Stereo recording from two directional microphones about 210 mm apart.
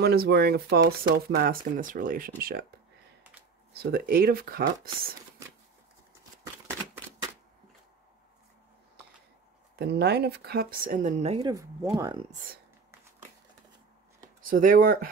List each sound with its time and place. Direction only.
0.0 s speech: 50° right (ahead or behind)
3.7 s speech: 45° right (ahead or behind)
9.8 s speech: 50° right (ahead or behind); by 11.5 s 30° right (ahead or behind)
11.5 s speech: 15° right (ahead or behind)
14.4 s speech: 40° right (ahead or behind)